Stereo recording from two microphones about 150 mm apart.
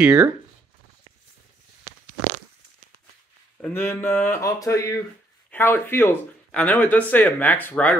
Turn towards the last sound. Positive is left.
turn(degrees=10)  # may be behind; listen again after turning